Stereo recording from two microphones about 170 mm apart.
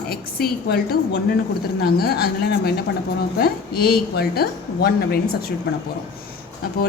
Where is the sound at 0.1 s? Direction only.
65° left (ahead or behind).